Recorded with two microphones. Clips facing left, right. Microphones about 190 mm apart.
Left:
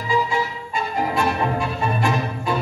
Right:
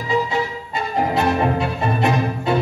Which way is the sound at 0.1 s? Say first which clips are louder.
Right 1 dB; 25° right (ahead or behind).